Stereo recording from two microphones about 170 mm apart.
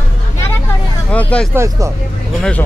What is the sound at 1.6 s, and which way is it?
Speech, 15° right (ahead or behind).